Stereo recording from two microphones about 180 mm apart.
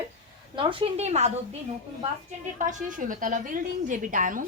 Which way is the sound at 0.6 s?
30° right (ahead or behind).